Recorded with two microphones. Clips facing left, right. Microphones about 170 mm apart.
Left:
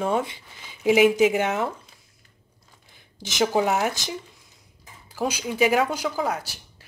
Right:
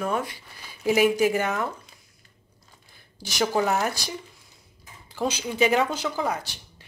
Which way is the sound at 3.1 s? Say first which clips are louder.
Left 2 dB; 20° left (ahead or behind).